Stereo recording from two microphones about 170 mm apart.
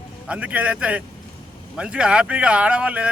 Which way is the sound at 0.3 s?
10° right (ahead or behind).